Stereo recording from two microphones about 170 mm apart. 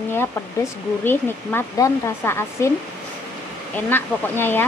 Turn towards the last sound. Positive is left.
turn(degrees=10)  # may be behind; listen again after turning